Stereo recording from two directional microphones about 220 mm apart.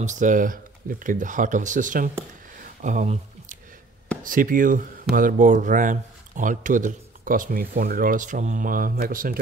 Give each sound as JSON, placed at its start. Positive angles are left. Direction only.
{"t": 0.0, "sound": "speech", "side_deg": -35}